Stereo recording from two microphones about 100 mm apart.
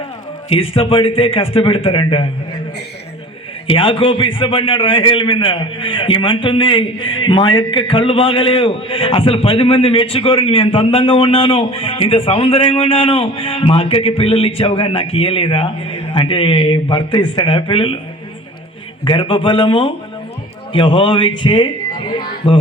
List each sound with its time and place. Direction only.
0.5 s a man's voice: 70° left (ahead or behind)
3.7 s a man's voice: 60° left (ahead or behind)
19.0 s a man's voice: 50° left (ahead or behind)